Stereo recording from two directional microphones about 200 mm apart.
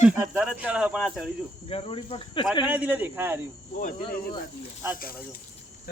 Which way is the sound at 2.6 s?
10° right (ahead or behind).